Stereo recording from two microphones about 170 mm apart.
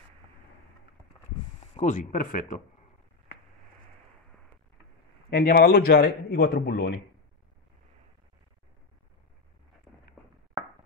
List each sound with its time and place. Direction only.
1.8 s speech: 50° left (ahead or behind)
5.3 s a man's voice: 60° left (ahead or behind)